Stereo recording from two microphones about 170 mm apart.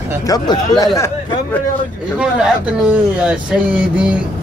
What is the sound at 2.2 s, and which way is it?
Speech, 5° right (ahead or behind).